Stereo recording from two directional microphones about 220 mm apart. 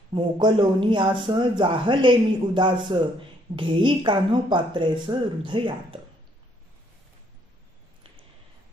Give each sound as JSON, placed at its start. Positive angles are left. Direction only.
{"t": 0.1, "sound": "speech", "side_deg": -20}